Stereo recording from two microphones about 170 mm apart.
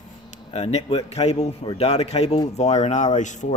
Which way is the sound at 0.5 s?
35° left (ahead or behind).